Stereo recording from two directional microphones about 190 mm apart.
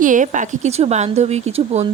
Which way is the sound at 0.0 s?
40° right (ahead or behind).